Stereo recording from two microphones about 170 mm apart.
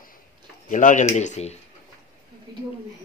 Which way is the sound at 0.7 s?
45° left (ahead or behind).